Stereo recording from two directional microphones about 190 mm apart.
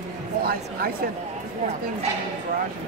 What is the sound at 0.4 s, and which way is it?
Speech, 50° right (ahead or behind).